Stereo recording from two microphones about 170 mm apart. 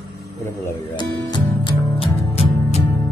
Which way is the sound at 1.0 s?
25° left (ahead or behind).